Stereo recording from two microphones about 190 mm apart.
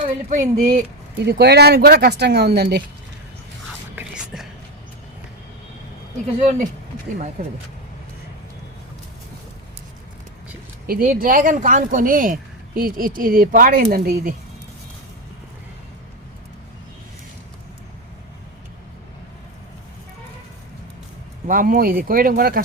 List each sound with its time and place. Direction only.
0.0 s speech: 40° right (ahead or behind)
1.2 s speech: 60° right (ahead or behind)
3.9 s whispering: 5° right (ahead or behind)
7.4 s speech: 45° right (ahead or behind)
10.8 s speech: 50° right (ahead or behind)
21.4 s speech: 45° right (ahead or behind)